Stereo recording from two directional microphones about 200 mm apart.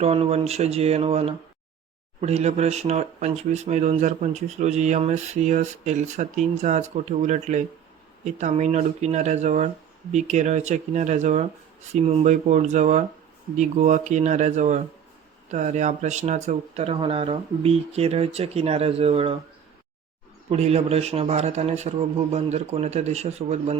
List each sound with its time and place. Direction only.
0.0 s speech: 30° right (ahead or behind)
20.5 s speech: 30° right (ahead or behind)